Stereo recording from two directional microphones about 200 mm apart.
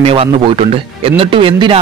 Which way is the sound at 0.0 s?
30° right (ahead or behind).